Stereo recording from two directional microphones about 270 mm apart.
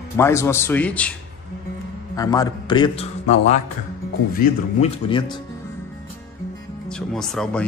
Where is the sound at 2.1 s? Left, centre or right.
Centre.